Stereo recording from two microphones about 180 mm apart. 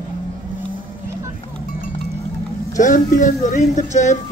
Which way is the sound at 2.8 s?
45° left (ahead or behind).